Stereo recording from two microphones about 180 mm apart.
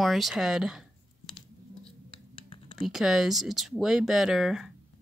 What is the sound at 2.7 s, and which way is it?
Speech, centre (ahead or behind).